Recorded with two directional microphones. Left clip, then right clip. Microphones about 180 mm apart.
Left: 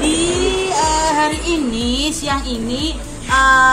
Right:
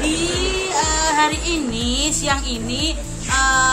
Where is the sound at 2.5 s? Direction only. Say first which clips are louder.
Left 2 dB; 10° right (ahead or behind).